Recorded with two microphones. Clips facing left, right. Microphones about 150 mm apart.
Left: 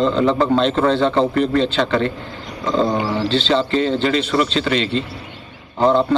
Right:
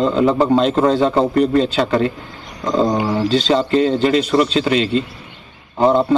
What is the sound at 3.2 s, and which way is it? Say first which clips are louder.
Speech: right 3 dB; 40° right (ahead or behind).